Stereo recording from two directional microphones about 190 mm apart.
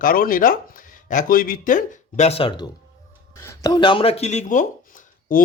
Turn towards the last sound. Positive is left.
turn(degrees=45)  # may be behind; listen again after turning